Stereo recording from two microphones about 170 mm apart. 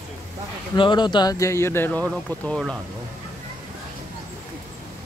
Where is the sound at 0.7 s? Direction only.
25° left (ahead or behind); by 2.8 s 5° left (ahead or behind).